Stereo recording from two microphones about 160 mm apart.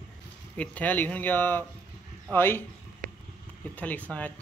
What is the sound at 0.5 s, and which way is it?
Speech, 10° left (ahead or behind).